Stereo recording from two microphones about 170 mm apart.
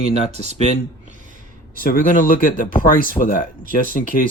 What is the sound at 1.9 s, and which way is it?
Speech, 55° left (ahead or behind).